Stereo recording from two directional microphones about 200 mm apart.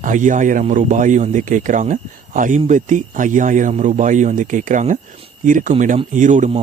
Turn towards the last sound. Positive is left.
turn(degrees=-40)  # may be behind; listen again after turning